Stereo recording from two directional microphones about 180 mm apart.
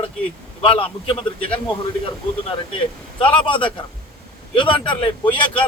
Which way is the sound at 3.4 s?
30° left (ahead or behind).